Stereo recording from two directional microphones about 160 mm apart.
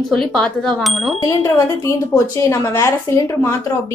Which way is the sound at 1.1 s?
20° left (ahead or behind).